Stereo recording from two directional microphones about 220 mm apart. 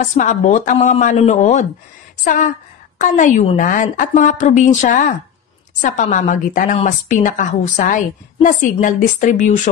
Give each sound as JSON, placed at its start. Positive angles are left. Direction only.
{"t": 0.0, "sound": "a woman's voice", "side_deg": 35}